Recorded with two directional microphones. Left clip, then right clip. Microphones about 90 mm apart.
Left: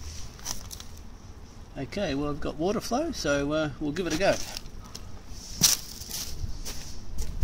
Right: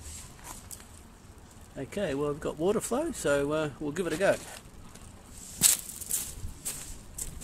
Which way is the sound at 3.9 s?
50° right (ahead or behind).